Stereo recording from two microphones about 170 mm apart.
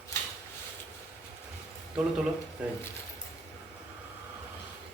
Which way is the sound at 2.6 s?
5° right (ahead or behind).